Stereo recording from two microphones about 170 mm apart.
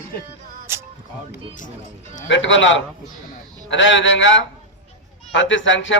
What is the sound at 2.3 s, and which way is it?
A man's voice, 90° left.